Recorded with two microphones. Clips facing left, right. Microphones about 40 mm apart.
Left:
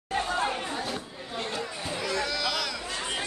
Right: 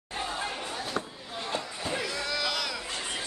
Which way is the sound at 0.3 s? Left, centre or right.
Left.